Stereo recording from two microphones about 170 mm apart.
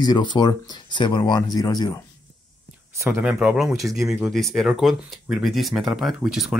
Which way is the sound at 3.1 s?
10° right (ahead or behind).